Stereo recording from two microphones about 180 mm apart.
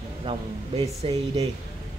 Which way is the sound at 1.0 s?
35° right (ahead or behind).